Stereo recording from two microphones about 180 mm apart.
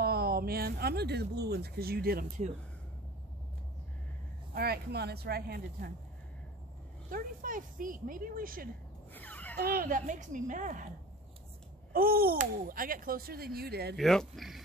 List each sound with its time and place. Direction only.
0.0 s speech: 60° right (ahead or behind)
4.6 s speech: 60° right (ahead or behind)
7.1 s speech: 50° right (ahead or behind)
9.1 s a sound: 10° left (ahead or behind)
9.6 s speech: 55° right (ahead or behind)
11.9 s speech: 55° right (ahead or behind)
13.9 s speech: centre (ahead or behind)